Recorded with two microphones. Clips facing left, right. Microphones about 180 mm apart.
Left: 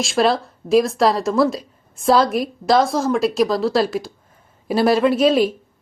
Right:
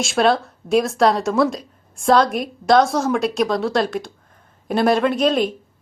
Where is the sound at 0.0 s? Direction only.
Centre (ahead or behind).